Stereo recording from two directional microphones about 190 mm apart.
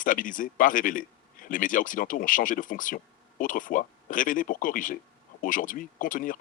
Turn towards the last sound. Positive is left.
turn(degrees=45)  # may be behind; listen again after turning